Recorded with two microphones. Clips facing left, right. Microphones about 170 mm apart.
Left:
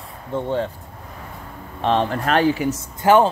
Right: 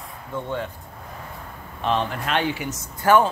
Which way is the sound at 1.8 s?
35° left (ahead or behind).